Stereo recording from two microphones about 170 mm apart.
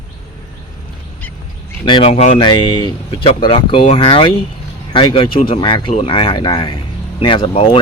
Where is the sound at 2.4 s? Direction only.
25° left (ahead or behind).